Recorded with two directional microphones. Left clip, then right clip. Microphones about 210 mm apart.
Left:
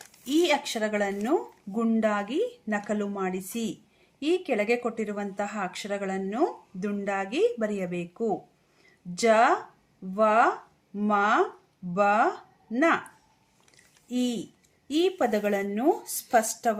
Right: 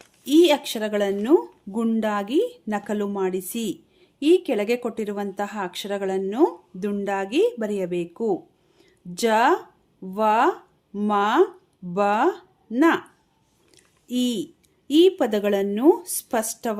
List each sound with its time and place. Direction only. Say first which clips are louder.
0.3 s speech: right 7 dB; 45° right (ahead or behind)
13.7 s chewing: right 4 dB; 50° right (ahead or behind)
14.8 s speech: right 7 dB; 50° right (ahead or behind)